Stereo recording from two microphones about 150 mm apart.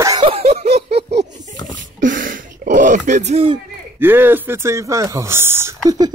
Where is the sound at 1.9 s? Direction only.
65° right (ahead or behind); by 3.5 s 45° right (ahead or behind).